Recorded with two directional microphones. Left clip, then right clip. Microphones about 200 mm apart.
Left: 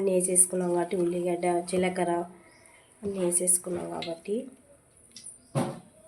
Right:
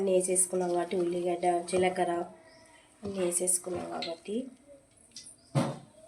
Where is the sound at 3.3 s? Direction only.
25° left (ahead or behind).